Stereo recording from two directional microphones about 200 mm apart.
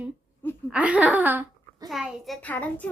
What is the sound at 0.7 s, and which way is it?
A child's voice, 5° right (ahead or behind).